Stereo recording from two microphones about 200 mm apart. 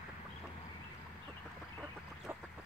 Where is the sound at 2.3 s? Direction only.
10° right (ahead or behind).